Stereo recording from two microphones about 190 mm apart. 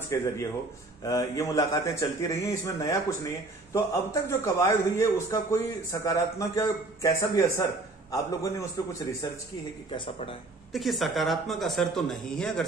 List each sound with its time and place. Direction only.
1.0 s a man's voice: 20° left (ahead or behind)
10.7 s speech: centre (ahead or behind)